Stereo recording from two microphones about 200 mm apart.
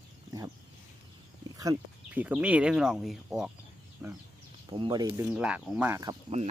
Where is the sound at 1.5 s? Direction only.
15° right (ahead or behind).